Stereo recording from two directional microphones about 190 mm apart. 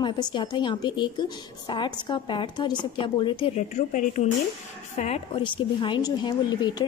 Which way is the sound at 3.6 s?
40° left (ahead or behind).